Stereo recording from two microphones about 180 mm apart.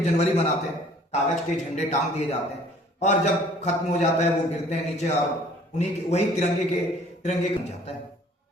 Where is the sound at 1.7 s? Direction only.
40° left (ahead or behind).